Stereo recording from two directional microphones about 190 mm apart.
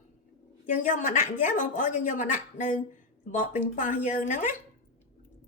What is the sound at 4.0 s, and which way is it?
Speech, 40° left (ahead or behind).